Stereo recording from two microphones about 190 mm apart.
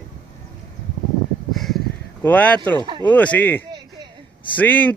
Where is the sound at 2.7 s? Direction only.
25° right (ahead or behind).